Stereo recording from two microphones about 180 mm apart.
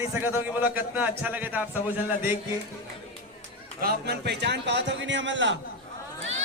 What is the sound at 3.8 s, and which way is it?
A man's voice, 60° right (ahead or behind).